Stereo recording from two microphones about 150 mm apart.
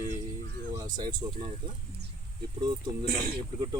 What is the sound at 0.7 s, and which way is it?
Speech, 25° right (ahead or behind).